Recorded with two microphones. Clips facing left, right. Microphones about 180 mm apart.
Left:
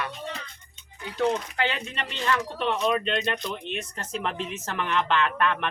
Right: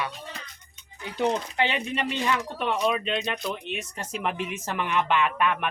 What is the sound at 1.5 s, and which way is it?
Speech, 15° right (ahead or behind).